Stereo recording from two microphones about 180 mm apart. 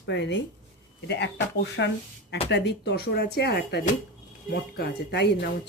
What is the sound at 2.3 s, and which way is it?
Speech, 70° left (ahead or behind).